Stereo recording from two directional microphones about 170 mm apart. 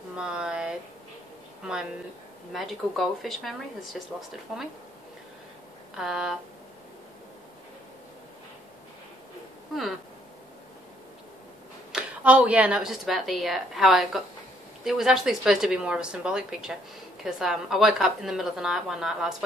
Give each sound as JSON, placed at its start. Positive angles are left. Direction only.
{"t": 0.2, "sound": "a sound", "side_deg": -5}
{"t": 2.5, "sound": "speech", "side_deg": 0}
{"t": 5.9, "sound": "speech", "side_deg": -5}
{"t": 11.9, "sound": "speech", "side_deg": -10}